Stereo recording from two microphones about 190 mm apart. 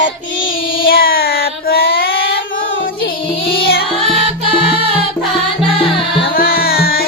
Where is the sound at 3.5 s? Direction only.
55° left (ahead or behind).